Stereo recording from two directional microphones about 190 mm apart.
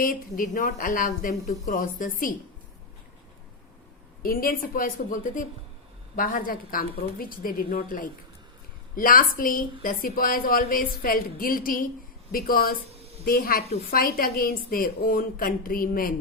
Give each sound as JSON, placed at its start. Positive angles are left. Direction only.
{"t": 0.0, "sound": "a woman's voice", "side_deg": 45}
{"t": 4.2, "sound": "a woman's voice", "side_deg": 50}
{"t": 13.0, "sound": "a sound", "side_deg": -35}
{"t": 13.2, "sound": "a woman's voice", "side_deg": 50}